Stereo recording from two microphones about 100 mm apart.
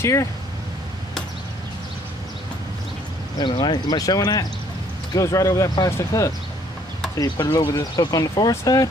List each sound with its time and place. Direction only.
0.0 s speech: 30° left (ahead or behind)
3.3 s speech: 55° left (ahead or behind)
4.0 s speech: 40° left (ahead or behind)
7.2 s speech: 40° left (ahead or behind)